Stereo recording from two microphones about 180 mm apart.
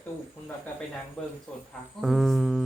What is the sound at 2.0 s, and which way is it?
Music, centre (ahead or behind).